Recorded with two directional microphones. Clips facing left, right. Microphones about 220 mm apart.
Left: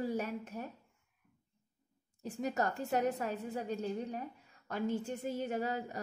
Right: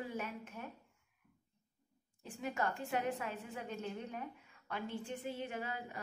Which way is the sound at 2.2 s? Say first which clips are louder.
Left 4 dB; 40° left (ahead or behind).